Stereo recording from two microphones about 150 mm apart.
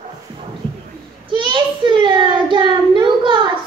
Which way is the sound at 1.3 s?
30° right (ahead or behind).